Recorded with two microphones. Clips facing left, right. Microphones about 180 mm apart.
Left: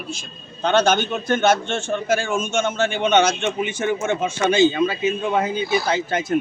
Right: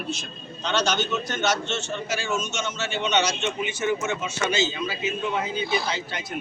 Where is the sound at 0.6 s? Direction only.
55° left (ahead or behind).